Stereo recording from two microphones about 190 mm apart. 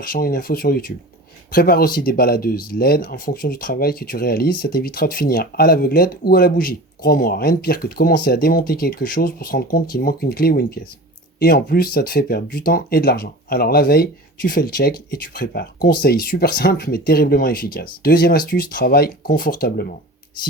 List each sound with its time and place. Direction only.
0.1 s speech: 50° left (ahead or behind)